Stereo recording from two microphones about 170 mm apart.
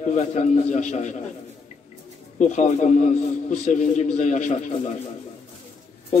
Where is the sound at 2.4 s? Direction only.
45° left (ahead or behind).